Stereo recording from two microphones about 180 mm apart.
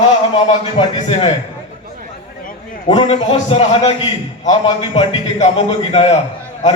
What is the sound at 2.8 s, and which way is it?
A man's voice, 30° left (ahead or behind).